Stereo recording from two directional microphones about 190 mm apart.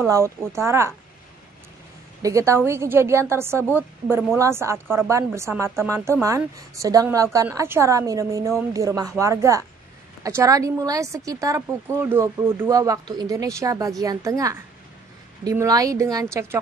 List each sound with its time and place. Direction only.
0.0 s a woman's voice: 15° right (ahead or behind)
2.2 s a woman's voice: 15° right (ahead or behind)